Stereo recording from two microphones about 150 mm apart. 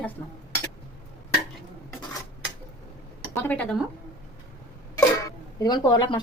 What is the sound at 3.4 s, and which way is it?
Speech, 10° left (ahead or behind).